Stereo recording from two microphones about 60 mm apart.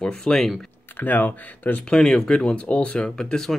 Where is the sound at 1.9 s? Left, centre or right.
Centre.